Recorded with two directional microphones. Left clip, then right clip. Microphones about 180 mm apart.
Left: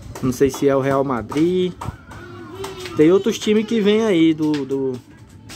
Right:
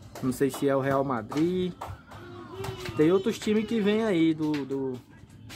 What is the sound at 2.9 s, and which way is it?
Speech, 5° left (ahead or behind).